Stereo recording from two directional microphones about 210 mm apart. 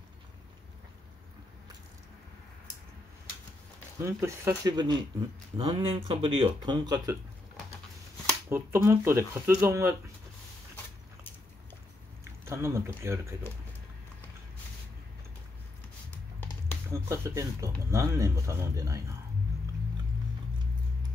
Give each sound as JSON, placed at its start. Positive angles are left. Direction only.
{"t": 4.0, "sound": "speech", "side_deg": -15}
{"t": 8.5, "sound": "speech", "side_deg": -10}
{"t": 12.4, "sound": "speech", "side_deg": -10}
{"t": 16.9, "sound": "speech", "side_deg": -15}